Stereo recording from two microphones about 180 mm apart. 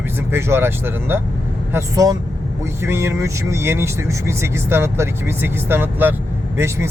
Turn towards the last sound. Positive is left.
turn(degrees=-15)  # may be behind; listen again after turning